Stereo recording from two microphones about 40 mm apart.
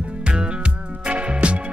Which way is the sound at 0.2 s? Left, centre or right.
Right.